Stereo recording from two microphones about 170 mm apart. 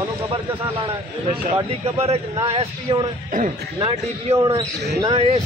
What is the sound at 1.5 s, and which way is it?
A man's voice, 35° right (ahead or behind).